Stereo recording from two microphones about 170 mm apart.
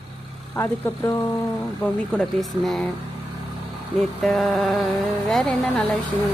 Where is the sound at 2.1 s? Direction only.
Centre (ahead or behind).